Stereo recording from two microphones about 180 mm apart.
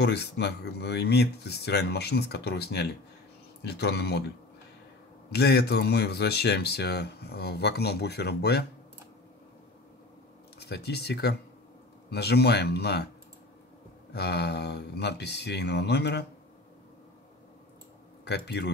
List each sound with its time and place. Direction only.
0.0 s speech: 70° left (ahead or behind)
5.3 s speech: 65° left (ahead or behind)
10.6 s speech: 65° left (ahead or behind)
14.1 s speech: 65° left (ahead or behind)
18.2 s speech: 70° left (ahead or behind)